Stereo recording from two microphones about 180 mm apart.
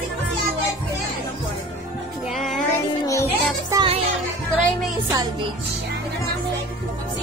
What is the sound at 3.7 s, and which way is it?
Music, 30° right (ahead or behind).